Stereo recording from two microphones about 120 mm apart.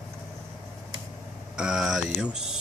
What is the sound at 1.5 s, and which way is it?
Speech, 5° right (ahead or behind).